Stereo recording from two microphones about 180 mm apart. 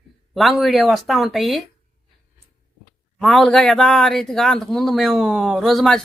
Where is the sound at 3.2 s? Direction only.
Centre (ahead or behind).